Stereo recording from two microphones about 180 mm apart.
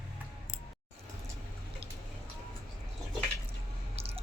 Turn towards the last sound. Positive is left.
turn(degrees=-35)  # may be behind; listen again after turning